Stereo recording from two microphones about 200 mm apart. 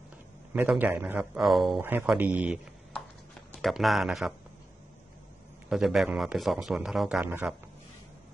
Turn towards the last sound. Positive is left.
turn(degrees=-5)  # may be behind; listen again after turning